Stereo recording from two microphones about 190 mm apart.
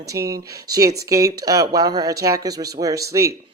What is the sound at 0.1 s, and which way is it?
Speech, 15° right (ahead or behind).